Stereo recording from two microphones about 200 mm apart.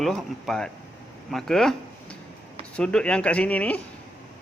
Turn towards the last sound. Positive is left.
turn(degrees=5)  # may be behind; listen again after turning